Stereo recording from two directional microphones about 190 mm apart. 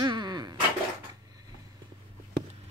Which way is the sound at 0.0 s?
20° right (ahead or behind).